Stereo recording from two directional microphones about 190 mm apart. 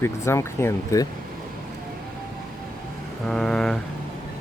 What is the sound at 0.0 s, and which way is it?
Speech, 15° left (ahead or behind).